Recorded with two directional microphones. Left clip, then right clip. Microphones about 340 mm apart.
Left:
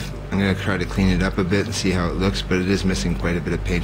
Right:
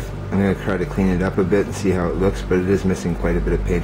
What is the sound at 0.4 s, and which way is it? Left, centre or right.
Speech, centre.